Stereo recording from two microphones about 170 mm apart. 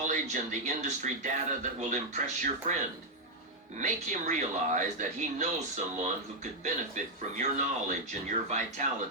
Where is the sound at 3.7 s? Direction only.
45° right (ahead or behind).